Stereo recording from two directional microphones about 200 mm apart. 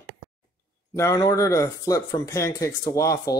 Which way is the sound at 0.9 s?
15° left (ahead or behind).